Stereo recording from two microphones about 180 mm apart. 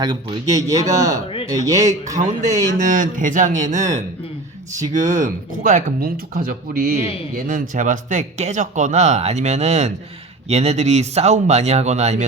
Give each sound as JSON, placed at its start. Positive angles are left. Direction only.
{"t": 0.0, "sound": "speech", "side_deg": -25}
{"t": 2.1, "sound": "speech", "side_deg": -40}
{"t": 4.7, "sound": "speech", "side_deg": -20}
{"t": 5.2, "sound": "speech", "side_deg": -45}